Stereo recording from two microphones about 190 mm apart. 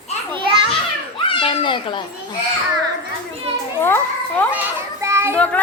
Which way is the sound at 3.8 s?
10° left (ahead or behind).